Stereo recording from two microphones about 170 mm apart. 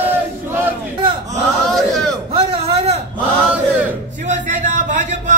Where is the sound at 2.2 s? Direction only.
35° right (ahead or behind).